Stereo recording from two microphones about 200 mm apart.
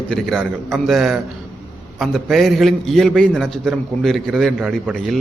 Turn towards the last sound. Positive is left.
turn(degrees=0)  # may be behind; listen again after turning